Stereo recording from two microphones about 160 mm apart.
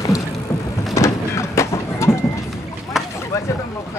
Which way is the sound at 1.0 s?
20° left (ahead or behind).